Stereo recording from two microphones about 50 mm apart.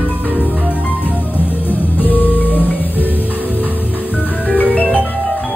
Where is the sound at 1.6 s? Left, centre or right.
Left.